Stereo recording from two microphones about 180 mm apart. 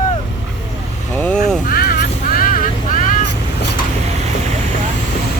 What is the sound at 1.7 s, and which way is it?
Vehicle, 55° left (ahead or behind).